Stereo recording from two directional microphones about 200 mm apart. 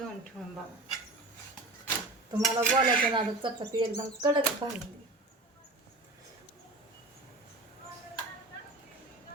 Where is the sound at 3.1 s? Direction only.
25° right (ahead or behind).